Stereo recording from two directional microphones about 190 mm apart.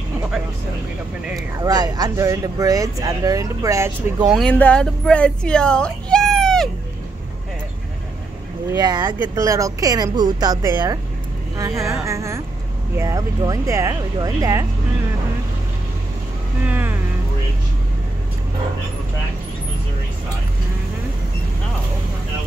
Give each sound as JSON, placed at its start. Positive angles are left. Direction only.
{"t": 1.6, "sound": "speech", "side_deg": -20}
{"t": 4.3, "sound": "speech", "side_deg": 5}
{"t": 8.7, "sound": "speech", "side_deg": -20}
{"t": 16.6, "sound": "a sound", "side_deg": -10}